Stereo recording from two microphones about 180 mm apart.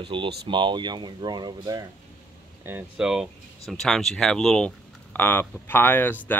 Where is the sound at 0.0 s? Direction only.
25° right (ahead or behind).